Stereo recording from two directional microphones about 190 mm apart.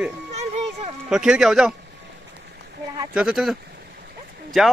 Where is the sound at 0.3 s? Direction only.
35° right (ahead or behind).